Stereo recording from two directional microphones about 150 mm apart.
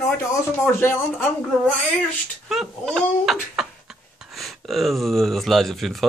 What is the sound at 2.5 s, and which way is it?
Speech, centre (ahead or behind).